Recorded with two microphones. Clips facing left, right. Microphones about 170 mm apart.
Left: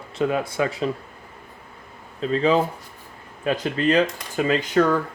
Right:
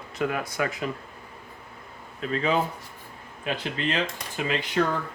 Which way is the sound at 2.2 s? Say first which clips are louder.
Left 6 dB; 35° left (ahead or behind).